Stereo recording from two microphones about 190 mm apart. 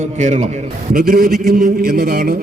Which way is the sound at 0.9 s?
45° right (ahead or behind).